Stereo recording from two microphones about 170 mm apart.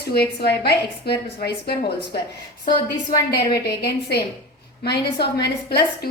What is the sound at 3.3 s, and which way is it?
A woman's voice, 70° left (ahead or behind).